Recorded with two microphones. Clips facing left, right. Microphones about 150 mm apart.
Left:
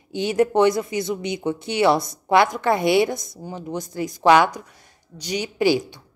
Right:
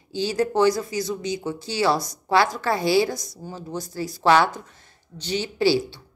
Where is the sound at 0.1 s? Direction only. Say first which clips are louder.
Left 4 dB; 20° left (ahead or behind).